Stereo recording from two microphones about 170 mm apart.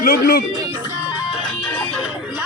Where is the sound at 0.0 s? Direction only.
60° left (ahead or behind).